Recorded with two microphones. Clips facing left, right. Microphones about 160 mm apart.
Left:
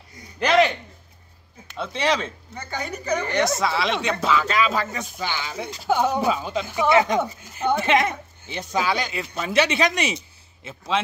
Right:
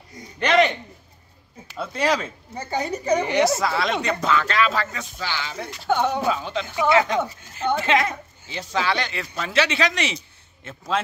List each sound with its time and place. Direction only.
0.4 s speech: 5° left (ahead or behind)
1.8 s speech: 5° right (ahead or behind)
2.5 s a woman's voice: 30° right (ahead or behind)
3.2 s speech: 10° right (ahead or behind); by 6.8 s 10° left (ahead or behind)
6.8 s speech: 20° left (ahead or behind)
10.6 s a man's voice: 5° left (ahead or behind)